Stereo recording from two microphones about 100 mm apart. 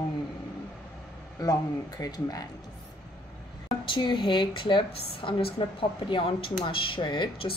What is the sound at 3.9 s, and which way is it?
Speech, 50° left (ahead or behind).